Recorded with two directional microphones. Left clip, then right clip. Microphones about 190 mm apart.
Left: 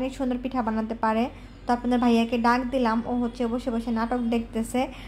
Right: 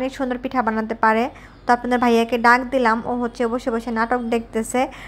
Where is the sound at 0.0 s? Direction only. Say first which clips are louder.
Right 5 dB; 15° right (ahead or behind).